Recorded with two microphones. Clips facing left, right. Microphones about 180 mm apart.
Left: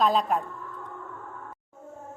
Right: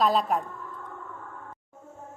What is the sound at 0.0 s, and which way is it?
Speech, centre (ahead or behind).